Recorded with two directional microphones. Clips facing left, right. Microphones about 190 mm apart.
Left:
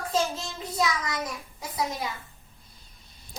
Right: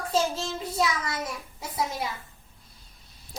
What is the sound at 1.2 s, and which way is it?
Speech, 25° right (ahead or behind).